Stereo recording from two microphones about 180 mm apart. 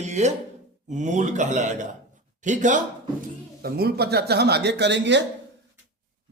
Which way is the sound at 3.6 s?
60° right (ahead or behind).